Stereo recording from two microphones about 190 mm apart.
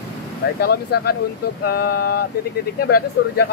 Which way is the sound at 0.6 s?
55° left (ahead or behind).